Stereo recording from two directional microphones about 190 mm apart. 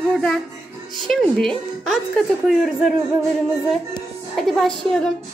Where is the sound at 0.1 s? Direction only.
5° left (ahead or behind).